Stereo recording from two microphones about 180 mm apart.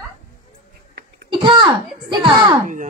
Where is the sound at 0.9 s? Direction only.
60° right (ahead or behind).